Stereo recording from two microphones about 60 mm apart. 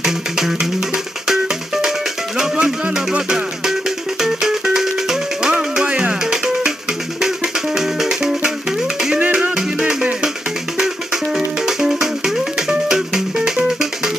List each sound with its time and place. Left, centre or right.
0.0 s music: centre
11.3 s music: centre